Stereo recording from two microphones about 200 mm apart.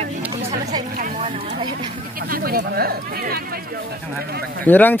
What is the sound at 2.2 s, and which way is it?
Speech, 45° right (ahead or behind).